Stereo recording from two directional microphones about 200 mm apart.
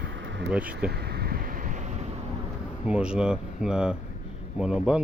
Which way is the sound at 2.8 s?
5° right (ahead or behind).